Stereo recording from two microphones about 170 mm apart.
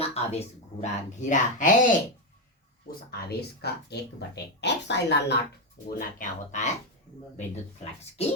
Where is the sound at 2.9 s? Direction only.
70° left (ahead or behind); by 5.3 s 85° left.